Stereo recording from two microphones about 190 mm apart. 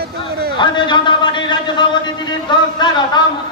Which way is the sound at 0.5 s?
25° left (ahead or behind).